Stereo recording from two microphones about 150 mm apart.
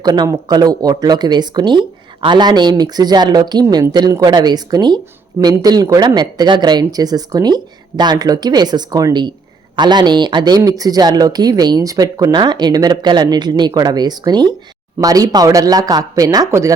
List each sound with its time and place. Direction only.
0.0 s speech: 25° right (ahead or behind)